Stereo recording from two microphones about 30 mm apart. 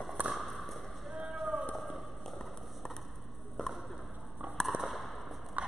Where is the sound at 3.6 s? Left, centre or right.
Left.